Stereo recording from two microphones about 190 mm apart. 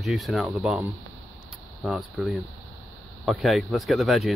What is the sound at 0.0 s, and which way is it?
Speech, centre (ahead or behind).